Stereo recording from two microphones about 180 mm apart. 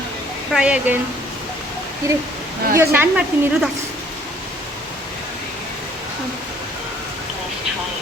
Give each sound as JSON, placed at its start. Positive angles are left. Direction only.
{"t": 0.5, "sound": "a woman's voice", "side_deg": -5}
{"t": 2.0, "sound": "a woman's voice", "side_deg": -15}